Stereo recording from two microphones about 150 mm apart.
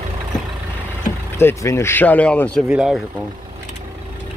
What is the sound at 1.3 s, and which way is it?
Speech, 20° left (ahead or behind).